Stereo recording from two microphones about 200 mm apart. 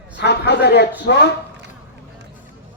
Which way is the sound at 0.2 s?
60° left (ahead or behind).